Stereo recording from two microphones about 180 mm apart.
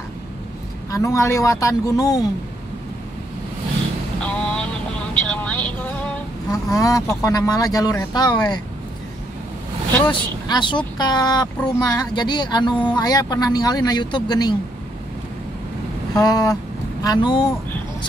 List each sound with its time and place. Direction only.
0.9 s speech: 15° left (ahead or behind)
4.2 s a sound: 5° left (ahead or behind)
5.3 s vehicle: 10° left (ahead or behind)
6.5 s speech: 20° left (ahead or behind)
10.0 s speech: 25° left (ahead or behind)
16.2 s speech: 20° left (ahead or behind)